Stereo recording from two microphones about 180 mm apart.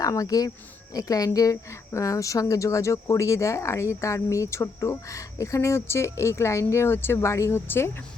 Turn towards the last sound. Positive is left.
turn(degrees=15)  # may be behind; listen again after turning